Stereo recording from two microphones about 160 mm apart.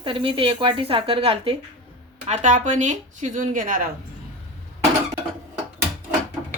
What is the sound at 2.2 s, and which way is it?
A woman's voice, 45° right (ahead or behind).